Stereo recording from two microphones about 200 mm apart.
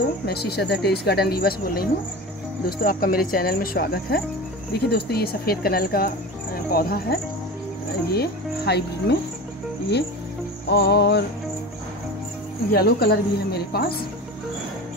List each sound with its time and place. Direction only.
0.3 s speech: 55° left (ahead or behind)
10.7 s speech: 55° left (ahead or behind)
12.7 s speech: 50° left (ahead or behind)